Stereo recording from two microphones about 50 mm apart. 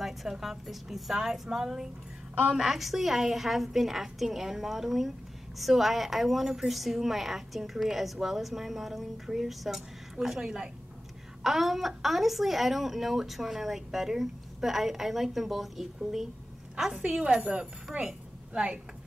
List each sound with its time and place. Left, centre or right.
0.0 s a woman's voice: centre
11.4 s a woman's voice: centre
17.0 s a woman's voice: centre
18.0 s a sound: centre